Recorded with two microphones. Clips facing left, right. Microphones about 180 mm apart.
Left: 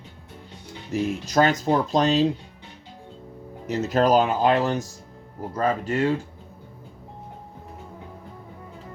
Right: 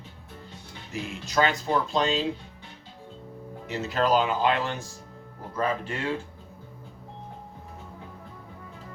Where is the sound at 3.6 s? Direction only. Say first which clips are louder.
Left 5 dB; 45° left (ahead or behind).